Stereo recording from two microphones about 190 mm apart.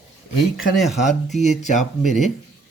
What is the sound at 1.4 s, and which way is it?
Speech, 40° left (ahead or behind).